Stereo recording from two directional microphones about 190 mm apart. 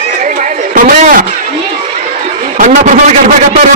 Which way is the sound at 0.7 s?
45° right (ahead or behind).